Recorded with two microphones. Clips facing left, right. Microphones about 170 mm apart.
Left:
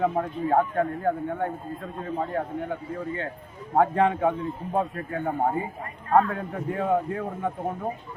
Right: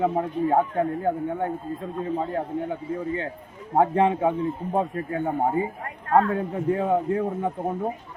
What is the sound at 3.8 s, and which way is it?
Speech, 20° right (ahead or behind).